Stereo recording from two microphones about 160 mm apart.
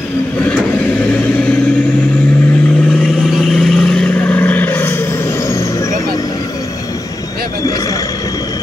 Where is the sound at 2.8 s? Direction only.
5° left (ahead or behind).